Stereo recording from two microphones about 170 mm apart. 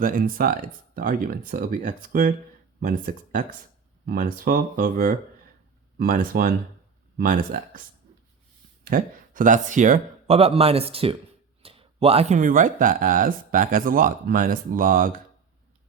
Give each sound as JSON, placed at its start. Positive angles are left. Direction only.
{"t": 0.0, "sound": "speech", "side_deg": -55}
{"t": 8.8, "sound": "speech", "side_deg": -55}
{"t": 10.3, "sound": "speech", "side_deg": -35}